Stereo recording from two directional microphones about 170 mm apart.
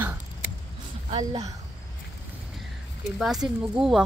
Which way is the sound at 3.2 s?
Centre (ahead or behind).